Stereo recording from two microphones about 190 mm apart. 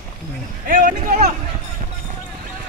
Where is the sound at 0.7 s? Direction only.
45° right (ahead or behind).